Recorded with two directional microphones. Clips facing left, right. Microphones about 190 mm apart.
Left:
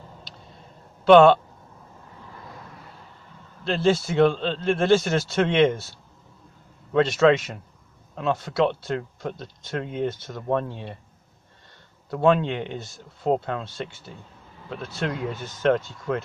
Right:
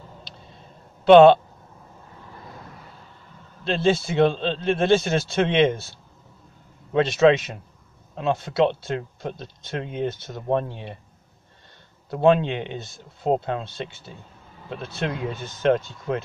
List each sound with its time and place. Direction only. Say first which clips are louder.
1.0 s speech: right 2 dB; 20° right (ahead or behind)
3.6 s speech: even; 20° right (ahead or behind)
6.9 s speech: right 1 dB; 15° right (ahead or behind)
12.1 s speech: right 2 dB; 20° right (ahead or behind)
15.0 s speech: even; 20° right (ahead or behind)